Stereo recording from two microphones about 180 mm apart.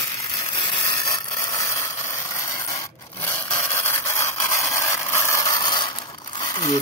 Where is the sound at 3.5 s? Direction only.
15° left (ahead or behind).